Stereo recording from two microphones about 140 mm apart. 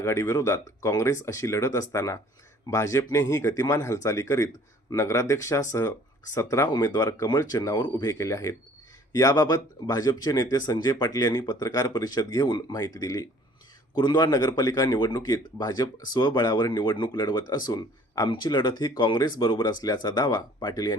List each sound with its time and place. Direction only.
0.0 s speech: 20° left (ahead or behind)